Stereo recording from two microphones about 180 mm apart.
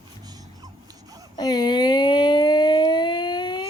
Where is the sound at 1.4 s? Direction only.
25° left (ahead or behind).